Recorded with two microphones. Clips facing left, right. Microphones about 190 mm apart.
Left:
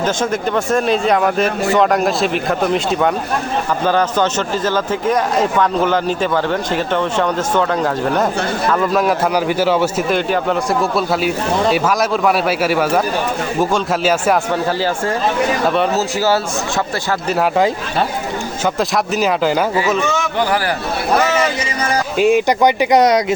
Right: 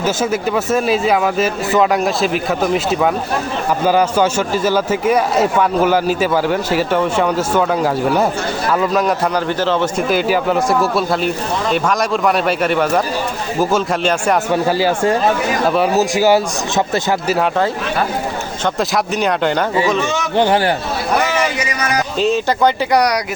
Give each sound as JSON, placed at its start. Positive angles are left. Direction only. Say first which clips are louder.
{"t": 0.0, "sound": "a man's voice", "louder": "right 1 dB", "side_deg": -5}
{"t": 14.5, "sound": "a man's voice", "louder": "right 3 dB", "side_deg": -10}
{"t": 16.0, "sound": "a man's voice", "louder": "right 4 dB", "side_deg": -15}
{"t": 18.6, "sound": "speech", "louder": "even", "side_deg": 0}
{"t": 20.3, "sound": "a man's voice", "louder": "right 8 dB", "side_deg": -25}
{"t": 21.6, "sound": "a sound", "louder": "even", "side_deg": 30}
{"t": 22.2, "sound": "speech", "louder": "left 3 dB", "side_deg": 15}